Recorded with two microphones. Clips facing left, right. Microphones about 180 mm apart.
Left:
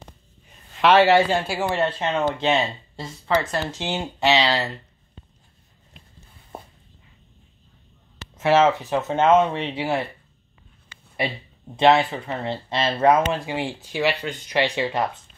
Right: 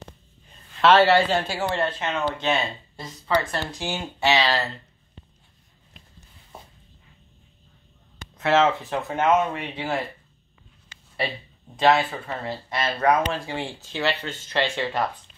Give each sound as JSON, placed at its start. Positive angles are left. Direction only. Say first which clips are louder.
{"t": 0.7, "sound": "a man's voice", "louder": "left 1 dB", "side_deg": 15}
{"t": 1.8, "sound": "speech", "louder": "left 3 dB", "side_deg": 30}
{"t": 6.5, "sound": "a sound", "louder": "left 6 dB", "side_deg": 55}
{"t": 8.4, "sound": "speech", "louder": "left 3 dB", "side_deg": 15}
{"t": 11.7, "sound": "speech", "louder": "left 3 dB", "side_deg": 20}